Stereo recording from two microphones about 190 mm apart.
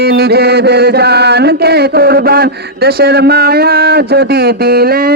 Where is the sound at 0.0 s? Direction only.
55° right (ahead or behind).